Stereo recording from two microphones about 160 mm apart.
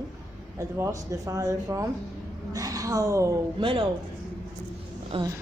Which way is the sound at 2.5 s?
20° right (ahead or behind).